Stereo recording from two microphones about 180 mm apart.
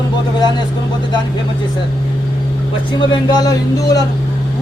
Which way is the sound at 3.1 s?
25° left (ahead or behind).